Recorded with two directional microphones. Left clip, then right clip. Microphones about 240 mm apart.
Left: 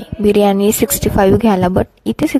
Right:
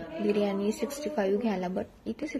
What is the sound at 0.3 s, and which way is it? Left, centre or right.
A woman's voice, left.